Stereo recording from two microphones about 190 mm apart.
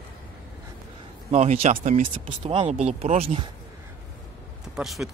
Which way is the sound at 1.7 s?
45° right (ahead or behind).